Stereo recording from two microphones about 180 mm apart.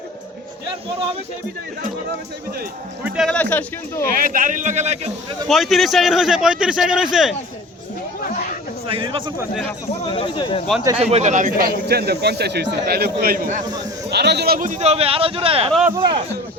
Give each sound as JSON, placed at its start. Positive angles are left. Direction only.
{"t": 0.7, "sound": "speech", "side_deg": -30}
{"t": 3.0, "sound": "a man's voice", "side_deg": 0}
{"t": 3.3, "sound": "speech", "side_deg": 10}
{"t": 4.1, "sound": "speech", "side_deg": -50}
{"t": 5.5, "sound": "a man's voice", "side_deg": 0}
{"t": 8.2, "sound": "a sound", "side_deg": 50}
{"t": 8.9, "sound": "speech", "side_deg": -30}
{"t": 10.1, "sound": "speech", "side_deg": 30}
{"t": 11.0, "sound": "speech", "side_deg": -40}
{"t": 14.1, "sound": "speech", "side_deg": -65}